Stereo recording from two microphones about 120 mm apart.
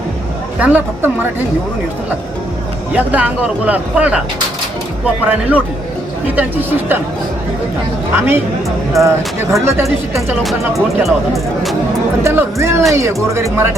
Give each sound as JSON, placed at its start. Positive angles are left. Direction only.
{"t": 0.6, "sound": "speech", "side_deg": -15}
{"t": 2.9, "sound": "speech", "side_deg": -15}
{"t": 9.0, "sound": "speech", "side_deg": 0}
{"t": 9.6, "sound": "speech", "side_deg": -20}
{"t": 10.4, "sound": "speech", "side_deg": 0}
{"t": 12.2, "sound": "speech", "side_deg": -20}